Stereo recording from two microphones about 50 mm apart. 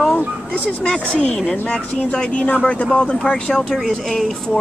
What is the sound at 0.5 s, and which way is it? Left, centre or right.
Speech, left.